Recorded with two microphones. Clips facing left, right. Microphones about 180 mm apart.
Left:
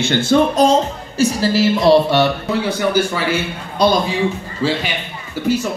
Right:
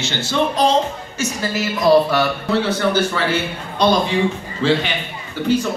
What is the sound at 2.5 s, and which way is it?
A man's voice, 10° left (ahead or behind).